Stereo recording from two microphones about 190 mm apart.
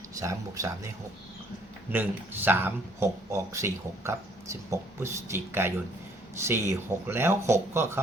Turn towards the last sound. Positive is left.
turn(degrees=-15)  # may be behind; listen again after turning